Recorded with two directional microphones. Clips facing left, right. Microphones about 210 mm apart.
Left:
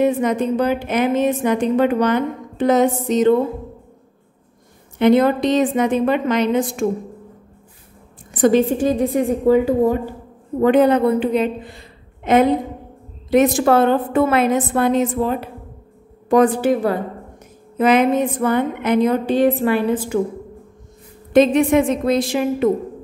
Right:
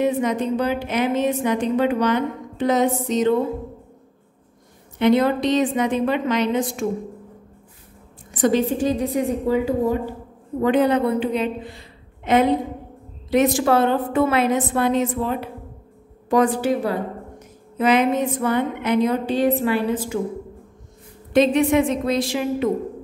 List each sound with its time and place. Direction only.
0.0 s a woman's voice: 50° left (ahead or behind)
4.9 s a woman's voice: 50° left (ahead or behind)
8.3 s a woman's voice: 50° left (ahead or behind)
21.3 s a woman's voice: 50° left (ahead or behind)